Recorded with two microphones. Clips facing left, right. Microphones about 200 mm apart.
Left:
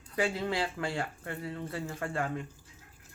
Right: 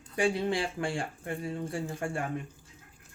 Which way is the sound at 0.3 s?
25° right (ahead or behind).